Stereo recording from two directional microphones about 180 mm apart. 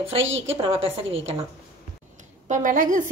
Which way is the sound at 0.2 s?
90° right.